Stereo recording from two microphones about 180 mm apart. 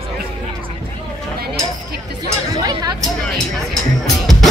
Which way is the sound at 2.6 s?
20° right (ahead or behind).